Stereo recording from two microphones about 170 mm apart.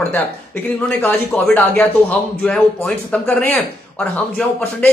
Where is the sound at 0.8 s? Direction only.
10° left (ahead or behind).